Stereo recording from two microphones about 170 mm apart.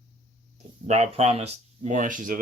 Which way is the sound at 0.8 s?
40° right (ahead or behind).